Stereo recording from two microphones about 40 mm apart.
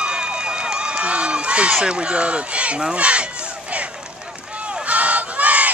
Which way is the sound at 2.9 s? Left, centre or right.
Right.